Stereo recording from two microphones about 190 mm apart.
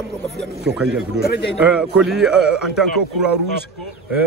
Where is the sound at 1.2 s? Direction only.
60° left (ahead or behind).